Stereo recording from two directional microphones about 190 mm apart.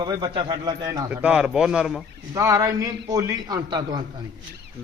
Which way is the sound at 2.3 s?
15° right (ahead or behind).